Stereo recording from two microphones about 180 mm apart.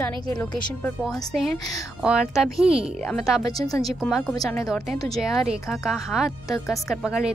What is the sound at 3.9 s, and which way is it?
Speech, centre (ahead or behind).